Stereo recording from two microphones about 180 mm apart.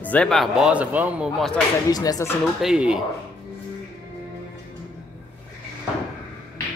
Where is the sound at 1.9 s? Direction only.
20° left (ahead or behind).